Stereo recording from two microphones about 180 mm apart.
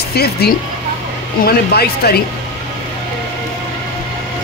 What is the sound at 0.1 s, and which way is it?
Speech, 60° left (ahead or behind).